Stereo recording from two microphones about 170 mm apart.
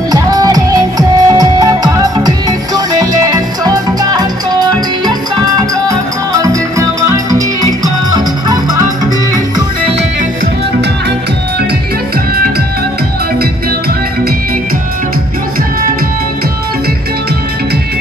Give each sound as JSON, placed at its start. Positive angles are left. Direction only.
{"t": 0.1, "sound": "music", "side_deg": -20}